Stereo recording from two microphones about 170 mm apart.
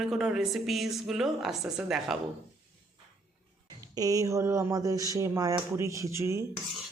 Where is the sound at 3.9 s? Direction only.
20° right (ahead or behind).